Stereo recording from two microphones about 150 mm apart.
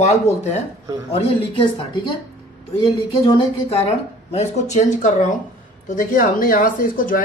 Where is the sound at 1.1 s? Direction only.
40° left (ahead or behind).